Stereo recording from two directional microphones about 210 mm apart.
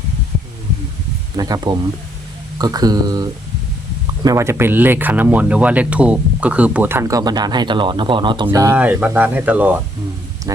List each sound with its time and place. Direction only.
1.4 s speech: 20° right (ahead or behind)